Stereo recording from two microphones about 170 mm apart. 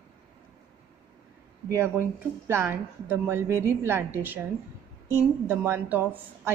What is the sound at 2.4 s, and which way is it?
A woman's voice, 15° right (ahead or behind).